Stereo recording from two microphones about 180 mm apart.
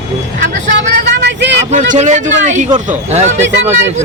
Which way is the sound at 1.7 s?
40° right (ahead or behind).